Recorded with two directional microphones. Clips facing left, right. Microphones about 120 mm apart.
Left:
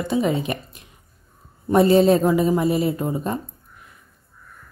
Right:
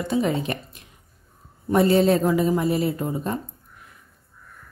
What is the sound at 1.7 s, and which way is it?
A woman's voice, 25° left (ahead or behind).